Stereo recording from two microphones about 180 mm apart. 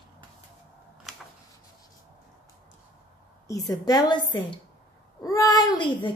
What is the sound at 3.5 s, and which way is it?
Speech, 20° left (ahead or behind).